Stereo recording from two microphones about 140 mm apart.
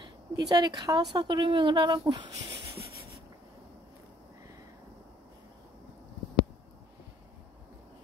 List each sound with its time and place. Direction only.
0.0 s speech: 30° right (ahead or behind)